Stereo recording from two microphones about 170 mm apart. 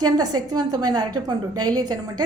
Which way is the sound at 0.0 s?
25° right (ahead or behind).